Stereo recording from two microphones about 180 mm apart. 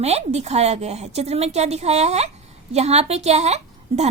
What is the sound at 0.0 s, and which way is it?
A woman's voice, 35° right (ahead or behind).